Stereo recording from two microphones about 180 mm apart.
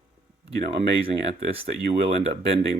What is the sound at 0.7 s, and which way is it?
Speech, 30° right (ahead or behind).